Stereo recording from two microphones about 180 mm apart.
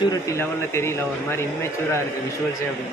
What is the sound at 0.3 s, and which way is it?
Speech, 15° left (ahead or behind).